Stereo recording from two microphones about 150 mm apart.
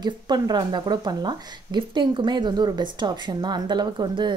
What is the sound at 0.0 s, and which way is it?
Speech, 30° right (ahead or behind).